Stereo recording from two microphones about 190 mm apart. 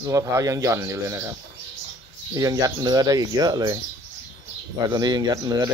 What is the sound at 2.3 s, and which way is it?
Speech, 20° right (ahead or behind).